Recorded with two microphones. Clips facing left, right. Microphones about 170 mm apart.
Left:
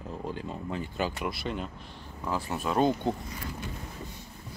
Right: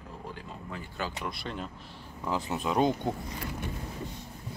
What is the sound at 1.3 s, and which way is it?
Speech, 5° left (ahead or behind).